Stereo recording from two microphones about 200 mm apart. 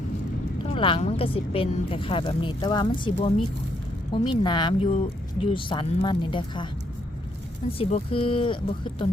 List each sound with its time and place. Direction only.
0.6 s speech: 25° left (ahead or behind)
7.8 s speech: 30° left (ahead or behind)